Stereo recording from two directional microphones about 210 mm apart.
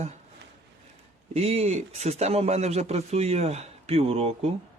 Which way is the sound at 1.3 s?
30° right (ahead or behind).